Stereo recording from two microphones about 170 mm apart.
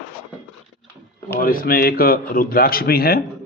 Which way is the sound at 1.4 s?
60° left (ahead or behind).